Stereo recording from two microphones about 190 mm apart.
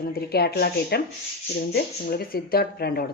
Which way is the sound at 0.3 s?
55° left (ahead or behind).